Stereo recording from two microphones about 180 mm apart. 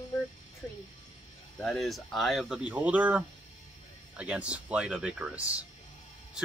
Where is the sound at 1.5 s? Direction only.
Centre (ahead or behind).